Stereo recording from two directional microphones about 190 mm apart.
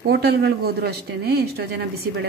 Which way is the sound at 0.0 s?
60° right (ahead or behind).